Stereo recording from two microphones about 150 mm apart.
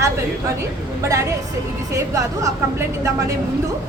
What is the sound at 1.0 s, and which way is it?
Speech, 20° right (ahead or behind).